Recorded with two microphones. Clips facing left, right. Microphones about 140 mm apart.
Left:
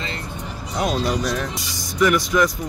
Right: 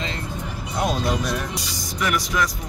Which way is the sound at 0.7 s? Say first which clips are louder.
Left 1 dB; 5° right (ahead or behind).